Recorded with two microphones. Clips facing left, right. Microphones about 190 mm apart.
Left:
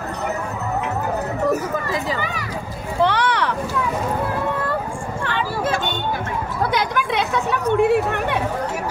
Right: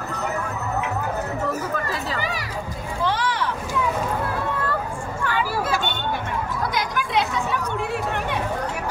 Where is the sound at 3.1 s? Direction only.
70° left (ahead or behind).